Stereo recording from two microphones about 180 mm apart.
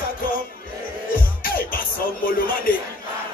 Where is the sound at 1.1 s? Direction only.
55° left (ahead or behind).